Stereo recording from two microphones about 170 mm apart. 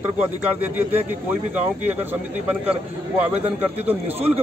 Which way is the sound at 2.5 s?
10° right (ahead or behind).